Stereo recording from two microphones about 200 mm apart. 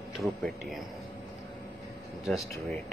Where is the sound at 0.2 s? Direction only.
Centre (ahead or behind).